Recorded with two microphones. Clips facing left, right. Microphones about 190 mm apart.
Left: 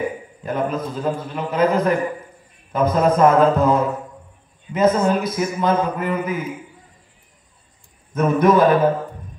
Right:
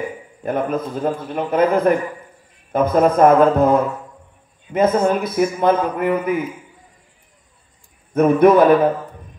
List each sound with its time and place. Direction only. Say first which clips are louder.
0.4 s a man's voice: right 2 dB; 55° right (ahead or behind)
8.1 s a man's voice: right 4 dB; 60° right (ahead or behind)